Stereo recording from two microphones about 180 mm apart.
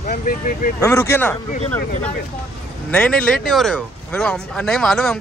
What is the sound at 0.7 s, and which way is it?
Speech, 15° left (ahead or behind).